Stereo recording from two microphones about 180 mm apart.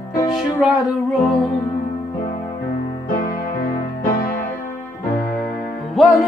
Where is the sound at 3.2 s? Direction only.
50° left (ahead or behind).